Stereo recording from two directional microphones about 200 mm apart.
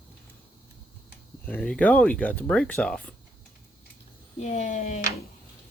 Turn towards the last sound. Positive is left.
turn(degrees=35)  # may be behind; listen again after turning